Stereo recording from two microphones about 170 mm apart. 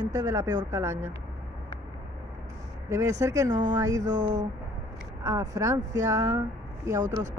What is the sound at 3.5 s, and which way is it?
Speech, 45° right (ahead or behind).